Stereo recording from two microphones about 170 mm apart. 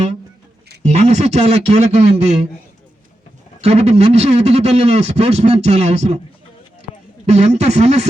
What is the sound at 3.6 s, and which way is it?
Speech, 40° right (ahead or behind).